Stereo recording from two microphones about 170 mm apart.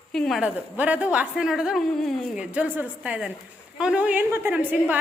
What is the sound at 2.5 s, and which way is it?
A woman's voice, 10° right (ahead or behind).